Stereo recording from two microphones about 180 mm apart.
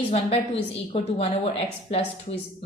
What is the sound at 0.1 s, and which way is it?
A woman's voice, 35° left (ahead or behind).